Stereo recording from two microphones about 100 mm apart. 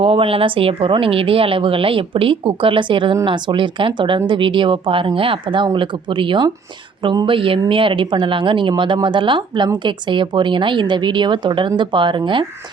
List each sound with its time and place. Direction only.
0.0 s a woman's voice: 70° right (ahead or behind); by 12.5 s 55° right (ahead or behind)